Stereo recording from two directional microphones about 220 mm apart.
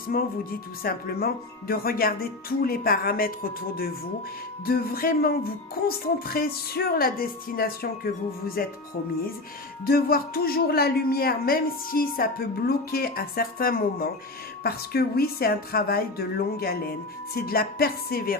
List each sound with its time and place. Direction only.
0.1 s speech: 40° left (ahead or behind)
9.8 s speech: 40° left (ahead or behind)